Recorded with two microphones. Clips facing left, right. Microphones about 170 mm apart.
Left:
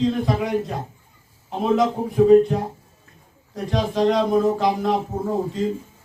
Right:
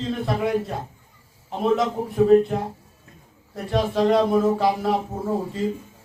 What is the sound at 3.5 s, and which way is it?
Speech, 5° right (ahead or behind).